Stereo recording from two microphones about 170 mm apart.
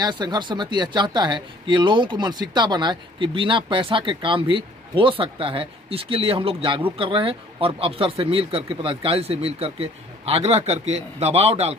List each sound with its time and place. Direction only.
0.0 s speech: 25° right (ahead or behind)